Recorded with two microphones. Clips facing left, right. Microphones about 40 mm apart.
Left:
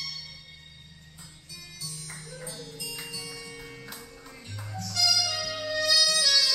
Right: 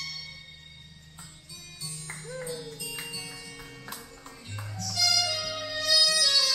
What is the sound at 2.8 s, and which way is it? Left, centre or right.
Music, centre.